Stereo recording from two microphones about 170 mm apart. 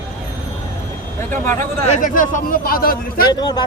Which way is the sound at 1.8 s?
45° left (ahead or behind).